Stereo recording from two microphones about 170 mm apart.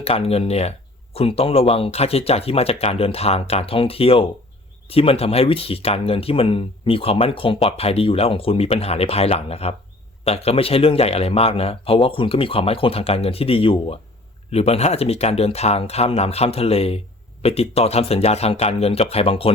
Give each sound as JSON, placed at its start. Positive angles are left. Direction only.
{"t": 0.0, "sound": "speech", "side_deg": 35}